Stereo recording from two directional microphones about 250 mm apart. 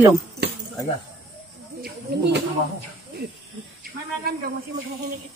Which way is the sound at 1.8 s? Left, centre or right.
Right.